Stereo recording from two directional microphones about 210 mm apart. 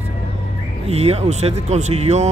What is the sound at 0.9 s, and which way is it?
Speech, 30° right (ahead or behind).